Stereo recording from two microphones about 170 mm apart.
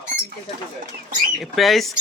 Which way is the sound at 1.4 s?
Centre (ahead or behind).